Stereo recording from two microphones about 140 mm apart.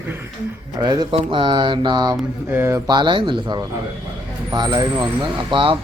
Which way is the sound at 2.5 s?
15° right (ahead or behind).